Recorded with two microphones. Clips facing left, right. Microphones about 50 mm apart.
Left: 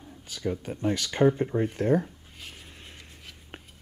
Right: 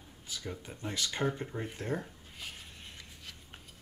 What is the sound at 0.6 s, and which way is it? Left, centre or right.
Speech, left.